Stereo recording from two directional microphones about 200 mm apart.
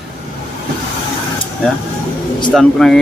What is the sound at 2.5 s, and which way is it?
Speech, centre (ahead or behind).